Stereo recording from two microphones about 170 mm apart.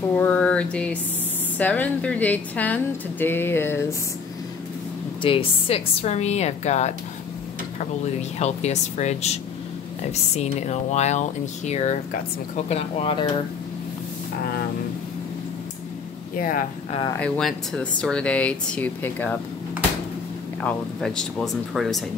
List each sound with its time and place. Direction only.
0.2 s a sound: 10° left (ahead or behind)
1.6 s speech: 10° left (ahead or behind)
5.2 s speech: 35° left (ahead or behind)
8.4 s speech: 40° left (ahead or behind)
16.3 s speech: 55° left (ahead or behind)
17.2 s speech: 5° left (ahead or behind)
20.6 s speech: 5° left (ahead or behind)